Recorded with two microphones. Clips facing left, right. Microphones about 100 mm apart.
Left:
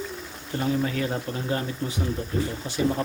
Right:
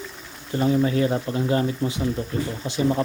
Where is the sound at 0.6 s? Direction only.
25° right (ahead or behind).